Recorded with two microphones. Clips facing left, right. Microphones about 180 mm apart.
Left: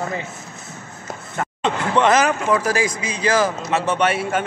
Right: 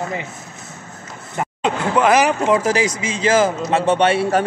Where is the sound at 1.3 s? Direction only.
5° right (ahead or behind).